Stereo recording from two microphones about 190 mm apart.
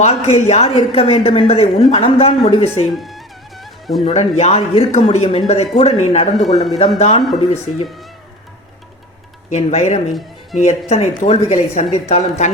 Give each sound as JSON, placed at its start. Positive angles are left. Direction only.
{"t": 0.0, "sound": "a woman's voice", "side_deg": 35}
{"t": 2.9, "sound": "music", "side_deg": 0}
{"t": 4.0, "sound": "a woman's voice", "side_deg": 35}
{"t": 9.5, "sound": "a woman's voice", "side_deg": 35}
{"t": 10.1, "sound": "speech", "side_deg": 0}
{"t": 10.6, "sound": "a woman's voice", "side_deg": 35}